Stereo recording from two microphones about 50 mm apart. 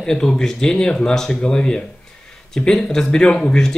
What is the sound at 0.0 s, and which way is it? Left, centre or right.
Speech, centre.